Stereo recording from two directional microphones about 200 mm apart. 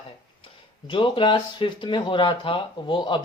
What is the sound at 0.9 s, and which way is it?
Speech, 25° left (ahead or behind).